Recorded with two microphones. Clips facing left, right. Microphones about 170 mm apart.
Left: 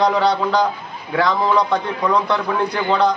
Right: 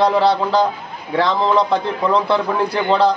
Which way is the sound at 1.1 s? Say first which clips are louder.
Right 1 dB; 25° right (ahead or behind).